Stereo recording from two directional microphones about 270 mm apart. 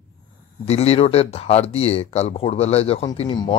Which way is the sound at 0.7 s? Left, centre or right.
Left.